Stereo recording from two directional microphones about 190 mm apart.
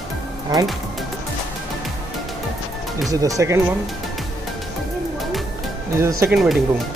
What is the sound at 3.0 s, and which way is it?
Speech, 15° right (ahead or behind).